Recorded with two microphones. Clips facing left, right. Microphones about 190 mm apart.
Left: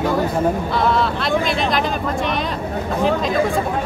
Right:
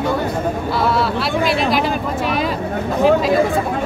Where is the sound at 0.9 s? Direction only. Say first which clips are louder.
Even; 5° right (ahead or behind).